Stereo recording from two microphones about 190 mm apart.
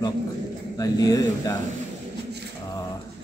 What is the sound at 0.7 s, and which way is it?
Speech, 20° left (ahead or behind).